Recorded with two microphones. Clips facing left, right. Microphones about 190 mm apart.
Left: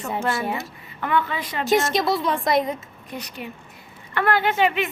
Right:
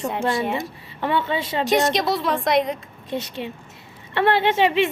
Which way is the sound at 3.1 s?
25° right (ahead or behind).